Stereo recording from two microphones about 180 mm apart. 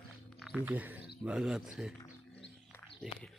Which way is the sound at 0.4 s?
5° right (ahead or behind).